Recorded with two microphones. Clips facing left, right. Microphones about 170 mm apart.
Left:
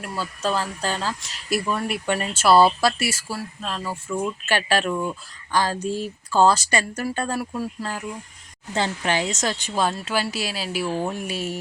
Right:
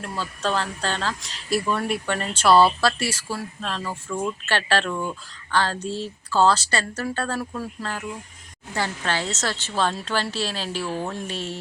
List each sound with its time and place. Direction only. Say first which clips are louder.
0.0 s speech: left 1 dB; 10° left (ahead or behind)